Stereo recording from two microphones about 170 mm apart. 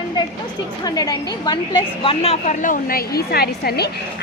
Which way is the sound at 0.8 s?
20° left (ahead or behind).